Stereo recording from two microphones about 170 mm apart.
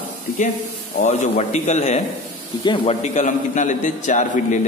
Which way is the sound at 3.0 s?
45° left (ahead or behind).